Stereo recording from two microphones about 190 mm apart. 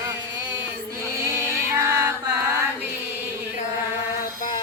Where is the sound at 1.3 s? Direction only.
15° right (ahead or behind).